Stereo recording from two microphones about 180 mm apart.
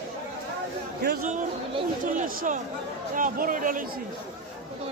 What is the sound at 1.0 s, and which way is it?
Chatter, 60° right (ahead or behind).